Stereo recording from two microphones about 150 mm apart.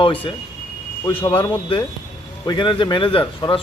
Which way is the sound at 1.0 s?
30° left (ahead or behind).